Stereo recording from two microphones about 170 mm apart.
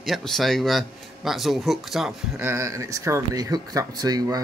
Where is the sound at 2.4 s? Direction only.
15° right (ahead or behind).